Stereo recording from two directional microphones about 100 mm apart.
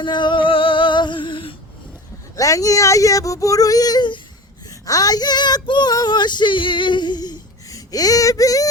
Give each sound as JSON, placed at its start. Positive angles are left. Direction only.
{"t": 0.0, "sound": "music", "side_deg": 50}
{"t": 2.3, "sound": "speech", "side_deg": 35}
{"t": 4.9, "sound": "female singing", "side_deg": 40}